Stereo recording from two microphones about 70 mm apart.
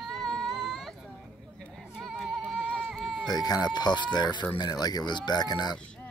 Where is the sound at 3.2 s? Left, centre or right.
Left.